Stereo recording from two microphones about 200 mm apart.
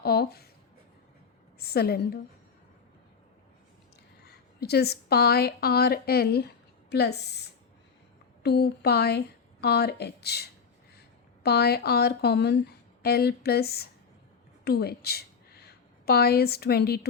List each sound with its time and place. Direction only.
0.0 s a woman's voice: 55° left (ahead or behind)
1.5 s a woman's voice: 50° left (ahead or behind)
4.2 s a woman's voice: 55° left (ahead or behind)
8.4 s a woman's voice: 55° left (ahead or behind)